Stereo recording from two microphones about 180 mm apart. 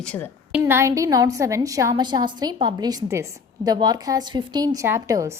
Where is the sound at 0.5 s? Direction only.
15° right (ahead or behind).